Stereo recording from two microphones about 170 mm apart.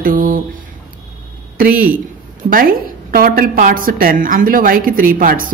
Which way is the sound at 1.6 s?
55° right (ahead or behind).